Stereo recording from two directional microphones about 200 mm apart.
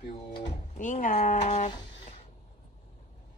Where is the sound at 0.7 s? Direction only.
40° left (ahead or behind).